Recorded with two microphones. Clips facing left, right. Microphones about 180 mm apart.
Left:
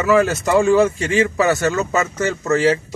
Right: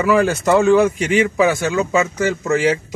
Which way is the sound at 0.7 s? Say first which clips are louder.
Right 1 dB; 15° right (ahead or behind).